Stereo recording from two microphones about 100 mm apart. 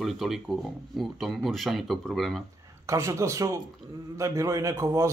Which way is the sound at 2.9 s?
30° right (ahead or behind).